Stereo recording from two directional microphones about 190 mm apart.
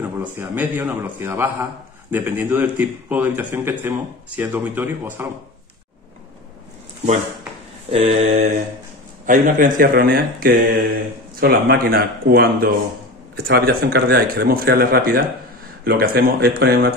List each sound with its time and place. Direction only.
0.0 s a man's voice: 10° right (ahead or behind)
7.9 s mantra: 30° right (ahead or behind)
9.2 s speech: 45° right (ahead or behind)
13.5 s speech: 55° right (ahead or behind)